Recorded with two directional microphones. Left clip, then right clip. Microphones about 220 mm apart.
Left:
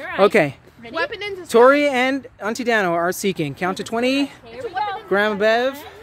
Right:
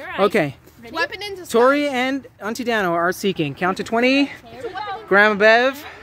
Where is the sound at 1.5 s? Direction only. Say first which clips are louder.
Left 3 dB; centre (ahead or behind).